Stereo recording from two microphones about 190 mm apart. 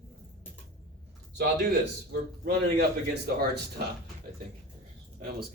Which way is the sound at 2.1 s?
60° right (ahead or behind).